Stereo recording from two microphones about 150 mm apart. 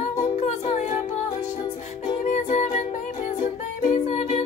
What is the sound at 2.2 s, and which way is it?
Music, 50° left (ahead or behind).